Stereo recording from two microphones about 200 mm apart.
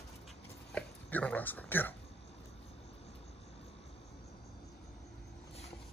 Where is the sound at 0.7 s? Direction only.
5° left (ahead or behind).